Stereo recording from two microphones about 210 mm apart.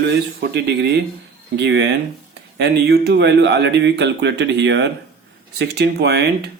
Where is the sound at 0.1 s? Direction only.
50° right (ahead or behind).